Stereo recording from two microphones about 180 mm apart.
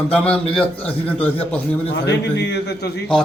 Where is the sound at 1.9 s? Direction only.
65° left (ahead or behind).